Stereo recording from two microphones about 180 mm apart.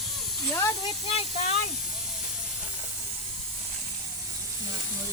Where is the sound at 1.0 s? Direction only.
35° left (ahead or behind).